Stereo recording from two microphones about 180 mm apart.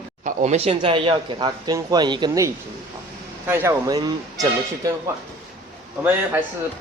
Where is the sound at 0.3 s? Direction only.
35° right (ahead or behind); by 4.9 s 20° right (ahead or behind).